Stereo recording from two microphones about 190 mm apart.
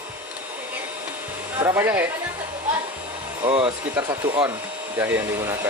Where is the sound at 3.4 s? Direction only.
30° right (ahead or behind).